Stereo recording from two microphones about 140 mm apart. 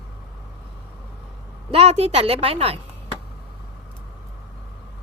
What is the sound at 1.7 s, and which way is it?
A woman's voice, 45° right (ahead or behind).